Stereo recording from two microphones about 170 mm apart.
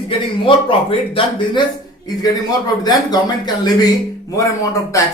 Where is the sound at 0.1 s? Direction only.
30° left (ahead or behind).